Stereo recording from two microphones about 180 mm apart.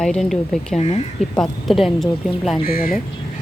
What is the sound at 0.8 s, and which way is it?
Speech, 35° left (ahead or behind).